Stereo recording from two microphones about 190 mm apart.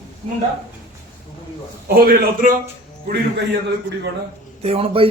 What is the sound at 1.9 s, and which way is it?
Speech, 55° right (ahead or behind).